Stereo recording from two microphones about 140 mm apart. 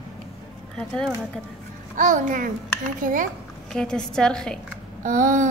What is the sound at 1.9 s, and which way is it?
Speech, 65° right (ahead or behind).